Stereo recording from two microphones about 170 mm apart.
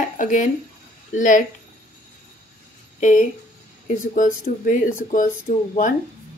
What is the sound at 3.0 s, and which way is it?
Speech, 50° left (ahead or behind).